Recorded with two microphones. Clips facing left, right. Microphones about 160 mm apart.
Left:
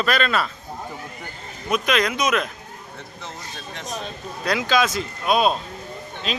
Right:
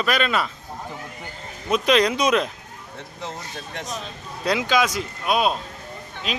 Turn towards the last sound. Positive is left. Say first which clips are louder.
# left 1 dB
turn(degrees=-15)  # may be behind; listen again after turning